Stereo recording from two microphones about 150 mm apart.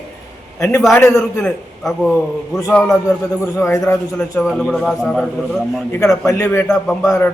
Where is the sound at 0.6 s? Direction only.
20° left (ahead or behind).